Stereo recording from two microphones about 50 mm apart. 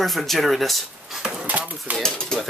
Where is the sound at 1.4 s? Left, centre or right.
Right.